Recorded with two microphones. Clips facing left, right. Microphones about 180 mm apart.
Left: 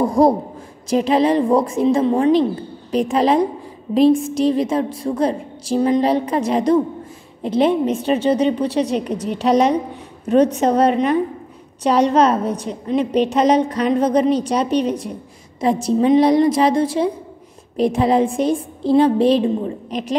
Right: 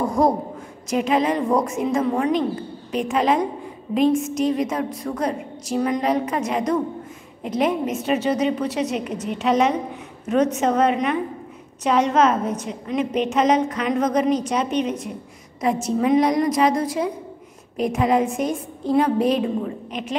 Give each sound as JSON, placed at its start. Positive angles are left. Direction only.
{"t": 0.0, "sound": "a woman's voice", "side_deg": 35}